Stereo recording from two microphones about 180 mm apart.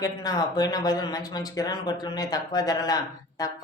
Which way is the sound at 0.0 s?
20° left (ahead or behind).